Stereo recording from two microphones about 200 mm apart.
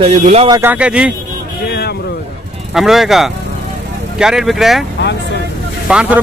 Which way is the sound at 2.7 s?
Centre (ahead or behind).